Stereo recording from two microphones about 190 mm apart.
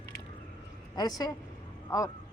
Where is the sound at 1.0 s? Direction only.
20° left (ahead or behind).